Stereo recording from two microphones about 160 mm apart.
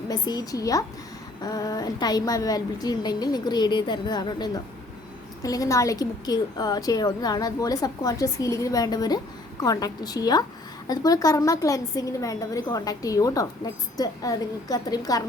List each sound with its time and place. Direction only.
0.1 s a woman's voice: 25° left (ahead or behind)